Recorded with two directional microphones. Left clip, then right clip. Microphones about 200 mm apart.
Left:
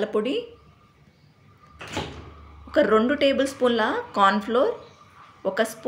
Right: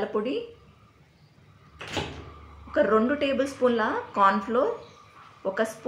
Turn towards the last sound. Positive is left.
turn(degrees=40)  # may be behind; listen again after turning